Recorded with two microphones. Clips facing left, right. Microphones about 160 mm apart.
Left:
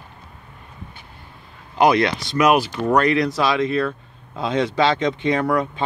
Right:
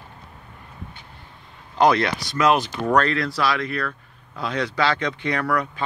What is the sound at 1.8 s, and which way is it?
Speech, 15° left (ahead or behind).